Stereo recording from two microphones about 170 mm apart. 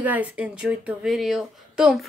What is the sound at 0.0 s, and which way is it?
Speech, 10° right (ahead or behind).